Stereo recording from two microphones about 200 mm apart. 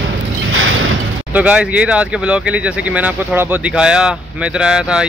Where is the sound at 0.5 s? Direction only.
80° right.